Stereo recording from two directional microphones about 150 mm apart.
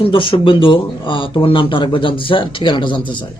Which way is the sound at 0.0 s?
35° left (ahead or behind).